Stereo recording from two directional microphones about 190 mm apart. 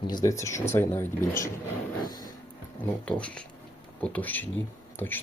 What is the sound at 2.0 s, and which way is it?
Music, 20° left (ahead or behind).